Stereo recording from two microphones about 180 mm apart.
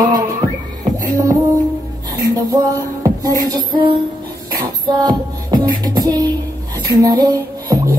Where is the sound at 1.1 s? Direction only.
20° right (ahead or behind).